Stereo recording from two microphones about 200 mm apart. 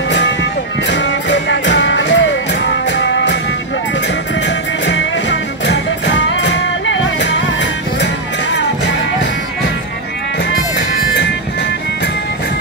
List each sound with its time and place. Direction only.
0.1 s music: 60° left (ahead or behind)
5.7 s music: 65° left (ahead or behind)